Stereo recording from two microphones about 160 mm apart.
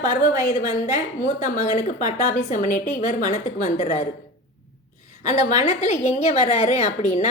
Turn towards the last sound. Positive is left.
turn(degrees=45)  # may be behind; listen again after turning